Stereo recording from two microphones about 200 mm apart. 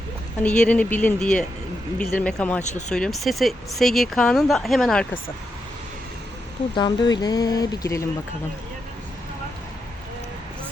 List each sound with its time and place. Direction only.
0.4 s speech: 5° left (ahead or behind)
2.6 s speech: 35° left (ahead or behind)
2.9 s speech: centre (ahead or behind)
6.7 s speech: 20° left (ahead or behind)